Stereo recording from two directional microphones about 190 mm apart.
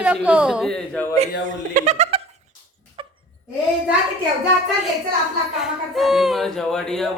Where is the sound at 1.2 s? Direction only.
40° right (ahead or behind).